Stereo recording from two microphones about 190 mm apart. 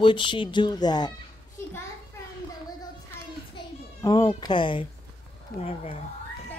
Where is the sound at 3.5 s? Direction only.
20° left (ahead or behind).